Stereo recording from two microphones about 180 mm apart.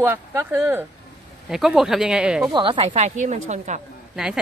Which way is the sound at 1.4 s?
Centre (ahead or behind).